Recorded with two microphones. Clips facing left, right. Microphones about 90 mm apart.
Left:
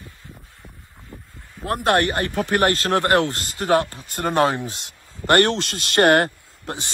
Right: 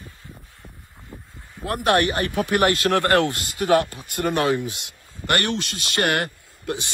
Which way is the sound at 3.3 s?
50° left (ahead or behind).